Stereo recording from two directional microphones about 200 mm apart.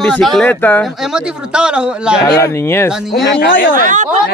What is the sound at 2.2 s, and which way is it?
Speech, 15° left (ahead or behind).